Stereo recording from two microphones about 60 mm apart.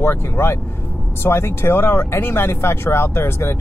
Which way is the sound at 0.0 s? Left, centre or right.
Left.